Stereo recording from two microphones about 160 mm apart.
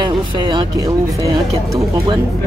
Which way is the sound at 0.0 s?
30° right (ahead or behind).